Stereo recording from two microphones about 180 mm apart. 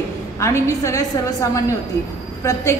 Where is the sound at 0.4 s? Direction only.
15° left (ahead or behind).